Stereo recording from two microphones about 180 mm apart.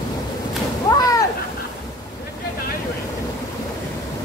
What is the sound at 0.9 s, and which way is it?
Cat, 20° left (ahead or behind).